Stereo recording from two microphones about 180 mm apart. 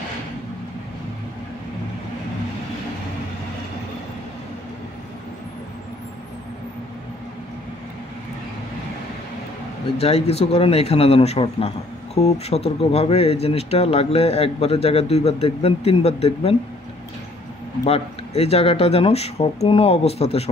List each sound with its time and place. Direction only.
9.9 s speech: 35° left (ahead or behind)
17.8 s speech: 35° left (ahead or behind)